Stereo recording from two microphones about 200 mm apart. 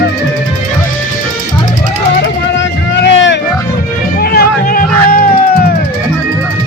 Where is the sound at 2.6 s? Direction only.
65° left (ahead or behind).